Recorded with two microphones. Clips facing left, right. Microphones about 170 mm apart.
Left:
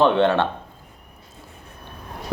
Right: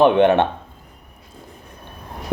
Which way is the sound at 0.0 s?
15° right (ahead or behind).